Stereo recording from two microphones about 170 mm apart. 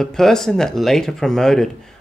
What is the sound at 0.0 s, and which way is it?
Speech, 5° left (ahead or behind).